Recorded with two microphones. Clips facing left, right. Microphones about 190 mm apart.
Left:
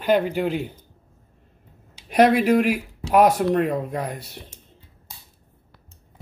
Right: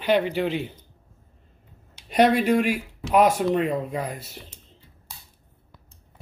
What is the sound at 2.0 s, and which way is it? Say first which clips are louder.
Speech: left 2 dB; 5° left (ahead or behind).